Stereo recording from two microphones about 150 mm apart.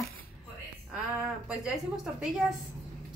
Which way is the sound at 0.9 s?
5° right (ahead or behind).